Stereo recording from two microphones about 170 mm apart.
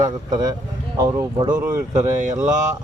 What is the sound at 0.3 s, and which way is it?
Speech, 25° right (ahead or behind).